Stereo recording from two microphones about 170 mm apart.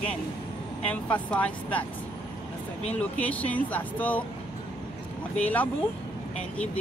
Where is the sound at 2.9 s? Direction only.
10° left (ahead or behind).